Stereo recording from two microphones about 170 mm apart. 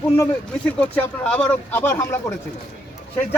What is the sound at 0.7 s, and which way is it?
Speech, 5° left (ahead or behind).